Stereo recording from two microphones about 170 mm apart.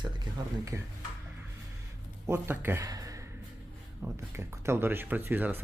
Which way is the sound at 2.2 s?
15° right (ahead or behind).